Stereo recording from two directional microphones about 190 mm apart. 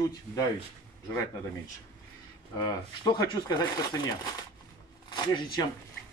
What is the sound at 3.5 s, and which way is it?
Speech, 20° left (ahead or behind).